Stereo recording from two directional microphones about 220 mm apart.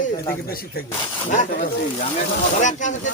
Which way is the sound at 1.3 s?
35° left (ahead or behind).